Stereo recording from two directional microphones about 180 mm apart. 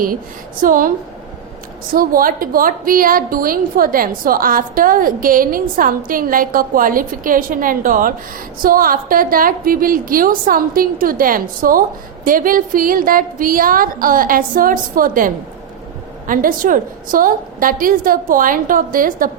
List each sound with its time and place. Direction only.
0.6 s a woman's voice: 50° right (ahead or behind)